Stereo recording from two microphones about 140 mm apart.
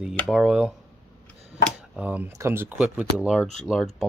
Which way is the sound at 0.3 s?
5° right (ahead or behind).